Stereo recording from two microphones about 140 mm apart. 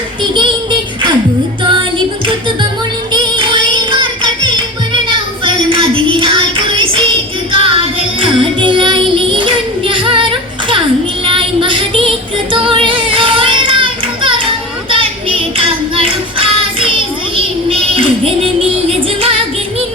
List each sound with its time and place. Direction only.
3.1 s music: 35° right (ahead or behind)
5.0 s child singing: 40° right (ahead or behind)
7.6 s music: 40° right (ahead or behind)
11.3 s music: 35° right (ahead or behind)